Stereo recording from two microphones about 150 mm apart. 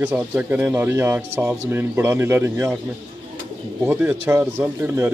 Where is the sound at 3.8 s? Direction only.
15° right (ahead or behind).